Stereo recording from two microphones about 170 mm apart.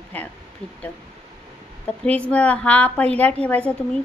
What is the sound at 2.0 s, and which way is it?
A woman's voice, 10° left (ahead or behind).